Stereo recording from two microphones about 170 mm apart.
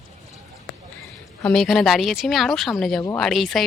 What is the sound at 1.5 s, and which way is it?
Speech, centre (ahead or behind).